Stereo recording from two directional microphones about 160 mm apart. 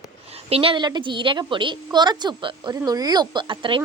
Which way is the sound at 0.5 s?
35° right (ahead or behind).